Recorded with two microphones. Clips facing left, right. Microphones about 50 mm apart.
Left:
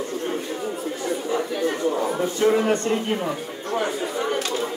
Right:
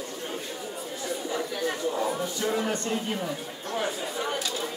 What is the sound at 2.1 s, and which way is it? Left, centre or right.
A man's voice, left.